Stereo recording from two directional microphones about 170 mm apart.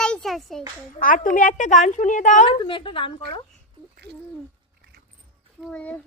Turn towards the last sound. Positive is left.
turn(degrees=10)  # may be behind; listen again after turning